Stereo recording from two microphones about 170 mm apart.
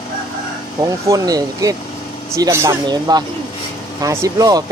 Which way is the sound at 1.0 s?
20° right (ahead or behind).